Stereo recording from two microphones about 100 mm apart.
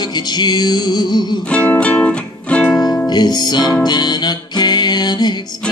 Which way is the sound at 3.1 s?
45° left (ahead or behind).